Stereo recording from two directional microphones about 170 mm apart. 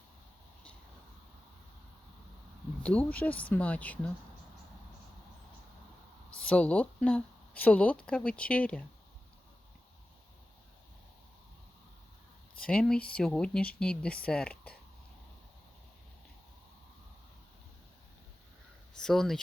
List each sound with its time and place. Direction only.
3.1 s speech: 10° left (ahead or behind)
6.5 s speech: 10° left (ahead or behind)
12.6 s speech: 5° left (ahead or behind)
18.9 s speech: 5° left (ahead or behind)